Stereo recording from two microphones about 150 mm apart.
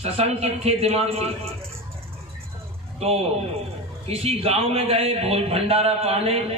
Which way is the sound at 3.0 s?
45° right (ahead or behind).